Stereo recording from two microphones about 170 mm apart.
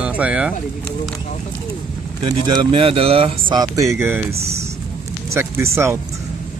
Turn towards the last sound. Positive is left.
turn(degrees=-15)  # may be behind; listen again after turning